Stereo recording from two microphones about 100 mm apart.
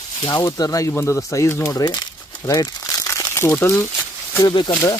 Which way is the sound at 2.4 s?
35° left (ahead or behind).